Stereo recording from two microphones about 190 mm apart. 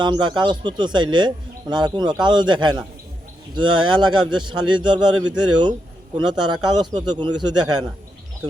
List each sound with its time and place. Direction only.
0.0 s speech: 25° right (ahead or behind)